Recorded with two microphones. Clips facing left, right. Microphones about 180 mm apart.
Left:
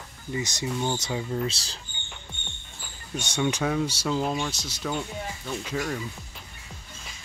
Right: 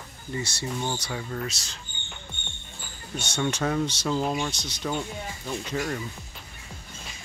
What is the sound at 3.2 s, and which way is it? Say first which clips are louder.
Speech: left 1 dB; 15° left (ahead or behind).